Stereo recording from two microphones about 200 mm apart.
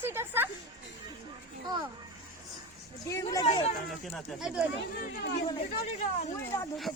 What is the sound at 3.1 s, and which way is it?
Speech, 15° left (ahead or behind).